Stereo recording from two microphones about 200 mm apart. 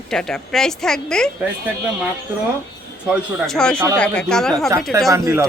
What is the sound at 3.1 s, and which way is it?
Speech, centre (ahead or behind).